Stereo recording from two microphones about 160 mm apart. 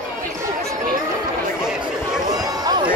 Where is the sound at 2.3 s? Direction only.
25° right (ahead or behind).